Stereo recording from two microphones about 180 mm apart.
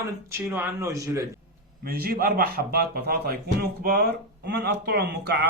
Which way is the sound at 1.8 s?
55° right (ahead or behind).